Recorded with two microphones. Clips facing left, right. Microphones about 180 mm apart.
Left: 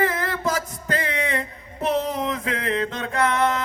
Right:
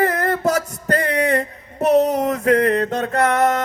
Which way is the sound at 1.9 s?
70° right (ahead or behind).